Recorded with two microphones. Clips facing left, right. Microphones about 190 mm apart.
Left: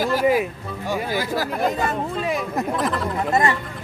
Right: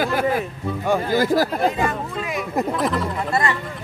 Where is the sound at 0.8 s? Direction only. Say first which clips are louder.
Right 5 dB; 50° right (ahead or behind).